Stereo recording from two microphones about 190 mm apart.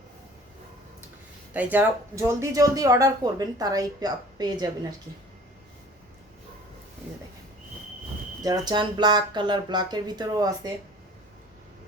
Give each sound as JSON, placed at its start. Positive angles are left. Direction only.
{"t": 1.5, "sound": "speech", "side_deg": -10}
{"t": 8.4, "sound": "speech", "side_deg": -20}